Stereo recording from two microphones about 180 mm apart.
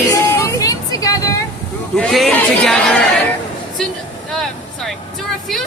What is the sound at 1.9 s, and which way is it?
Speech, centre (ahead or behind).